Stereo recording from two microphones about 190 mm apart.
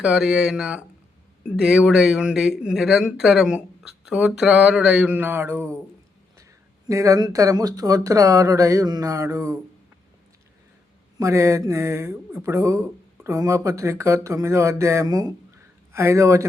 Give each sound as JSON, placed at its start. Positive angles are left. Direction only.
{"t": 0.0, "sound": "speech", "side_deg": -5}
{"t": 6.8, "sound": "speech", "side_deg": -15}
{"t": 11.2, "sound": "speech", "side_deg": -15}